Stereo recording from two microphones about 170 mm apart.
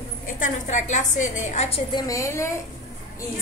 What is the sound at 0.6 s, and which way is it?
A woman's voice, 45° left (ahead or behind).